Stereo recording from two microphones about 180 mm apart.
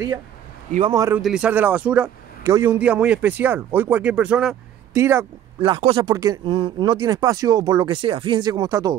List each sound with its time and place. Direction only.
0.9 s a man's voice: 15° right (ahead or behind)
1.2 s a man's voice: 5° right (ahead or behind)
5.6 s speech: 30° right (ahead or behind)